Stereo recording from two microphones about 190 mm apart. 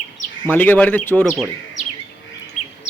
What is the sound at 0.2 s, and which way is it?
Bird, 40° left (ahead or behind).